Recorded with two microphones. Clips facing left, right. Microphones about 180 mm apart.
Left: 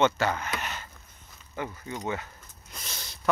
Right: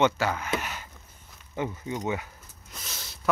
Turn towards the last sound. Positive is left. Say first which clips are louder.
# even
turn(degrees=-5)  # may be behind; listen again after turning